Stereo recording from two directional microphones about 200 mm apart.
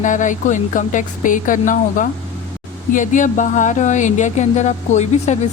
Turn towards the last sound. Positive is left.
turn(degrees=35)  # may be behind; listen again after turning